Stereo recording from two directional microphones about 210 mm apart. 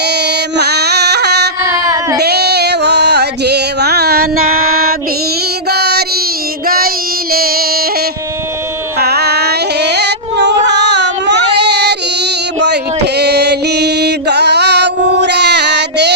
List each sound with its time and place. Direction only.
0.0 s music: 50° right (ahead or behind)
1.6 s child singing: 15° right (ahead or behind)
2.2 s music: 50° right (ahead or behind)
5.6 s child singing: 50° right (ahead or behind)
6.7 s female singing: 45° right (ahead or behind)
9.0 s carnatic music: 50° right (ahead or behind)